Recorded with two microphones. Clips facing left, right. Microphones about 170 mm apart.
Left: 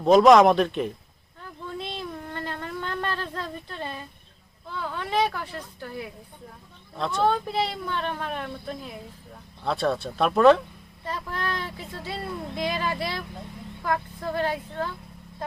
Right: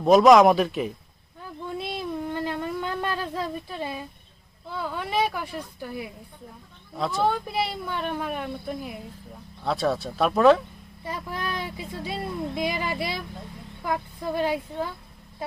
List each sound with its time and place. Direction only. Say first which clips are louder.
0.0 s speech: even; 5° right (ahead or behind)
1.4 s a sound: right 2 dB; 10° right (ahead or behind)
4.7 s speech: even; 10° right (ahead or behind)
11.0 s speech: left 1 dB; 10° right (ahead or behind)